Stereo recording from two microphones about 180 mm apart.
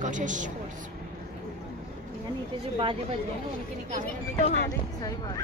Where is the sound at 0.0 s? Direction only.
45° right (ahead or behind).